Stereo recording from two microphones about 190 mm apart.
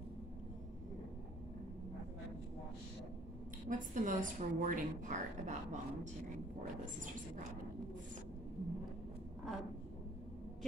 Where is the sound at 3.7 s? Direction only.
45° right (ahead or behind).